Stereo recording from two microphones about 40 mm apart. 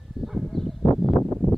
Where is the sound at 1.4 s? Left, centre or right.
Left.